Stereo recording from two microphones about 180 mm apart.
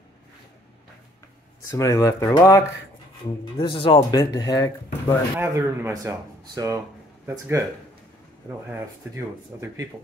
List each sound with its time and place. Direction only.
1.7 s speech: 20° left (ahead or behind)
3.5 s speech: 30° left (ahead or behind)
5.4 s speech: 15° right (ahead or behind)
8.7 s speech: 15° right (ahead or behind)